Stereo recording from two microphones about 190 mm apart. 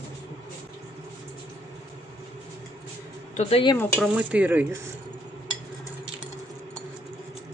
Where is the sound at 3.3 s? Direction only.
30° left (ahead or behind).